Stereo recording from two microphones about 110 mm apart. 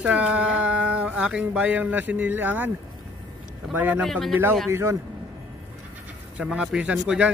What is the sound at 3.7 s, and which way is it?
Speech, 15° right (ahead or behind).